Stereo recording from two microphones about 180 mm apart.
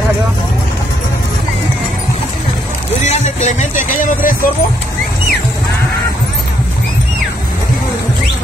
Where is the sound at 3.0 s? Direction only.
40° left (ahead or behind).